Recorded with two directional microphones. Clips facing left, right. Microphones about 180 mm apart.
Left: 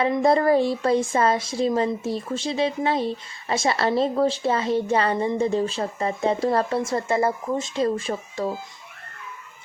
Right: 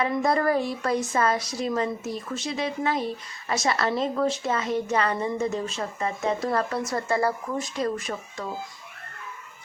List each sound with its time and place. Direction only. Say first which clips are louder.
0.0 s a woman's voice: left 4 dB; 25° left (ahead or behind)